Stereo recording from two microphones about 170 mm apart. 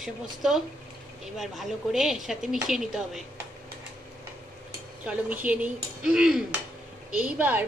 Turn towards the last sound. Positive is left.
turn(degrees=-10)  # may be behind; listen again after turning